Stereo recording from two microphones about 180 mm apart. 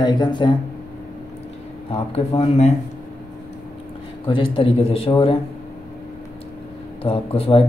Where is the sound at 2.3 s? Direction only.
35° left (ahead or behind).